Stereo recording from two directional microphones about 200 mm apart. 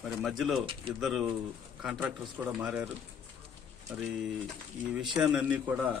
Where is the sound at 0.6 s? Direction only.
25° right (ahead or behind).